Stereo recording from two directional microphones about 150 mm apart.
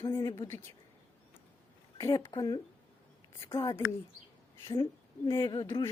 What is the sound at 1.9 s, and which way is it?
A woman's voice, 20° left (ahead or behind).